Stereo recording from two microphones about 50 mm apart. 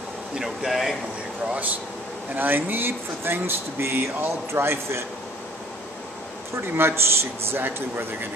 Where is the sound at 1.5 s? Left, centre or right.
Right.